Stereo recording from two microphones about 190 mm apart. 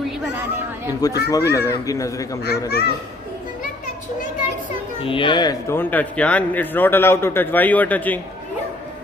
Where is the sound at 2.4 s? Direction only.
60° left (ahead or behind).